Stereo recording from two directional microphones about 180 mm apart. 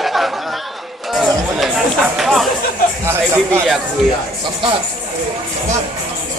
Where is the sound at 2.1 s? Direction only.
Centre (ahead or behind).